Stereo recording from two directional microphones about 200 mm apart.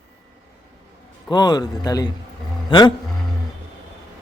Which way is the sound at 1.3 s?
20° left (ahead or behind).